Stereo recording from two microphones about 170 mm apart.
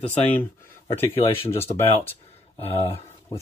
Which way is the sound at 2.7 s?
35° left (ahead or behind).